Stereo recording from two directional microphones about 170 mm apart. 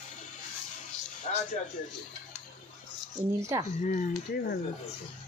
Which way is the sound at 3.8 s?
45° left (ahead or behind).